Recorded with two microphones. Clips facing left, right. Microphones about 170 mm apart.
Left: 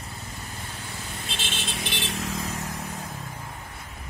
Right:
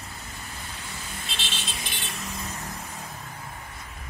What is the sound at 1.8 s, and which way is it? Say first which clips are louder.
Vehicle: left 6 dB; 80° left.